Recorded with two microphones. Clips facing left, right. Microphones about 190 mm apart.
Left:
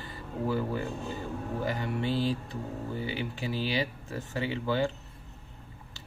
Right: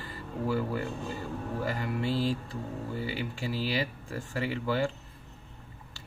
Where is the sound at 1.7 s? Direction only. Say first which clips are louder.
Even; 20° left (ahead or behind).